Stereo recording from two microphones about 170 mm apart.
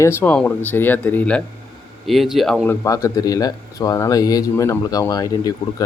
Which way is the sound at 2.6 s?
15° left (ahead or behind).